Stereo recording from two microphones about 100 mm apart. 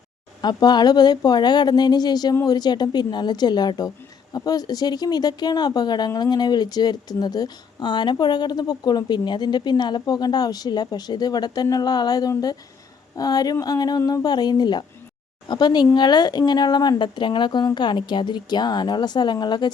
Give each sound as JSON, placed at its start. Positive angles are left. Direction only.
{"t": 0.4, "sound": "speech", "side_deg": 45}